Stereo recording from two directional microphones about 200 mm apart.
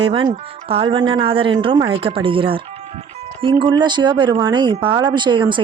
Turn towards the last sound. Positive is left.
turn(degrees=-25)  # may be behind; listen again after turning